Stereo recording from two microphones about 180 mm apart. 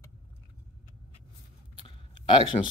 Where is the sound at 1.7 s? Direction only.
30° left (ahead or behind).